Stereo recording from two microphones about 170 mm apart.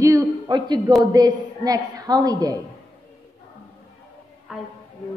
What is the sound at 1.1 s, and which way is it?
A man's voice, 20° right (ahead or behind).